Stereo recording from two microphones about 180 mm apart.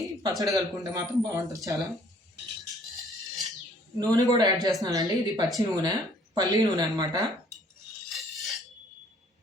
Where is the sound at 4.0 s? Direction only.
20° right (ahead or behind).